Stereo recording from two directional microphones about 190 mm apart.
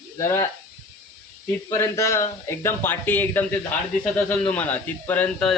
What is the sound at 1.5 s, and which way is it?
Speech, 15° left (ahead or behind).